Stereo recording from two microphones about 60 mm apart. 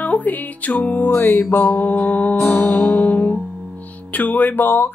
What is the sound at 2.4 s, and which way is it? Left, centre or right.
Music, left.